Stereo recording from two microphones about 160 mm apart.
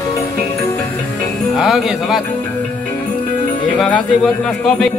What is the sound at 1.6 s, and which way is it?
Speech, centre (ahead or behind).